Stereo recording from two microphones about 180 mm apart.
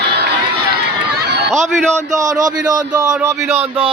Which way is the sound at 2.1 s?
20° right (ahead or behind).